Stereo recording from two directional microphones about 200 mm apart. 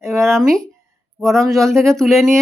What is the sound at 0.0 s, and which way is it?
Speech, centre (ahead or behind).